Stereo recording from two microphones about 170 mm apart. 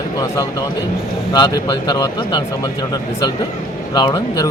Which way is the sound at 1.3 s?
25° left (ahead or behind).